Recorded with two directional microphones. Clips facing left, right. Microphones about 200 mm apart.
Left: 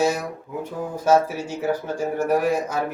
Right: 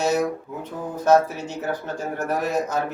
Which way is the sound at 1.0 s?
10° left (ahead or behind).